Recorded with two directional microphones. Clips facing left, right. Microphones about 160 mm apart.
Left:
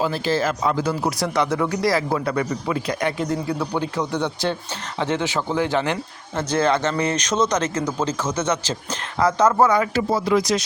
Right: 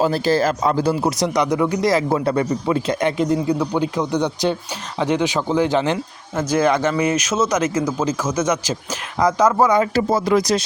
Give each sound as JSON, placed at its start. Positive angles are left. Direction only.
{"t": 0.0, "sound": "speech", "side_deg": -40}
{"t": 1.1, "sound": "speech", "side_deg": -20}
{"t": 9.7, "sound": "speech", "side_deg": -30}
{"t": 10.1, "sound": "speech", "side_deg": -45}